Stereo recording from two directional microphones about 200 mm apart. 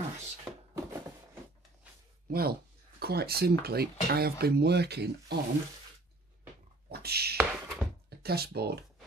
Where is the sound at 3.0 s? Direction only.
50° right (ahead or behind).